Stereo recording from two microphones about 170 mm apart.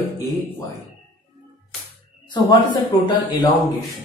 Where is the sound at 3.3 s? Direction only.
30° left (ahead or behind).